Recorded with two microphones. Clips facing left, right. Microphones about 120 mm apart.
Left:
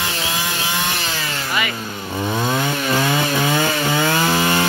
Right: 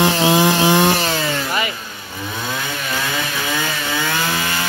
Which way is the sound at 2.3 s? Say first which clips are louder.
Left 5 dB; 35° left (ahead or behind).